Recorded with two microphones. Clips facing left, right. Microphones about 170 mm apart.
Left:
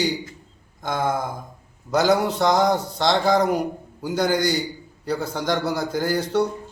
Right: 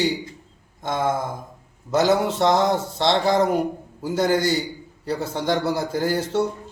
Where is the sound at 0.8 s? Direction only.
25° right (ahead or behind).